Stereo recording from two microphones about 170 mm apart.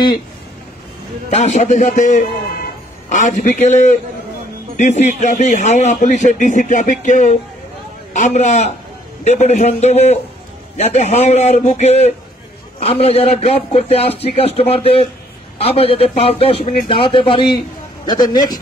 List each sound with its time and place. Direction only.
1.3 s a man's voice: 45° left (ahead or behind); by 18.6 s 25° left (ahead or behind)